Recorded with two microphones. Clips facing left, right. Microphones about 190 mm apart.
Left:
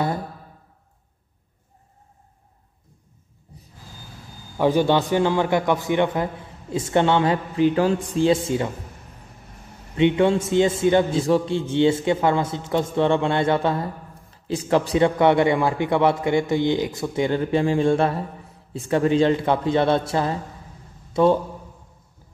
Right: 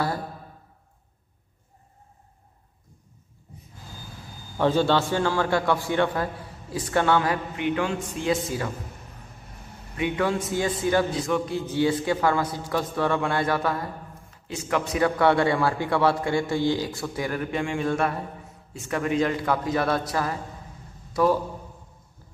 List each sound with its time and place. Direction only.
4.6 s a man's voice: 15° left (ahead or behind)
9.9 s a man's voice: 25° left (ahead or behind)